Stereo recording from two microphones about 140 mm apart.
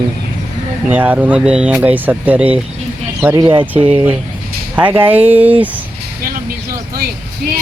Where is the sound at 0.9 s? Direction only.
10° right (ahead or behind).